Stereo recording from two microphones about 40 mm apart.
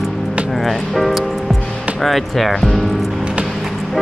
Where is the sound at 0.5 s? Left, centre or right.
Centre.